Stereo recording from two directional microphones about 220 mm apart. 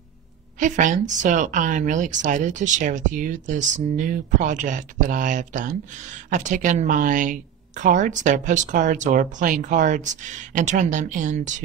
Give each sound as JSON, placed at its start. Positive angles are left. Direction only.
{"t": 0.6, "sound": "speech", "side_deg": -35}